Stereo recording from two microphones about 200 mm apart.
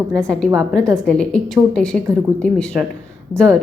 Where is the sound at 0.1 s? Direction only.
5° left (ahead or behind).